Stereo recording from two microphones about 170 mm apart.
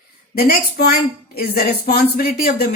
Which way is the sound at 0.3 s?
65° left (ahead or behind).